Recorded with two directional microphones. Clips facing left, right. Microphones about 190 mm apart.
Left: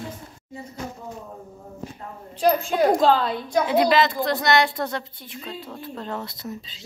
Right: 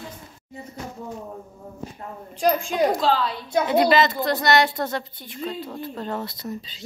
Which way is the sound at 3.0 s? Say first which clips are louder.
Left 3 dB; 50° left (ahead or behind).